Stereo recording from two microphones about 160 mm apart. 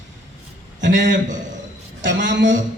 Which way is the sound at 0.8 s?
90° right.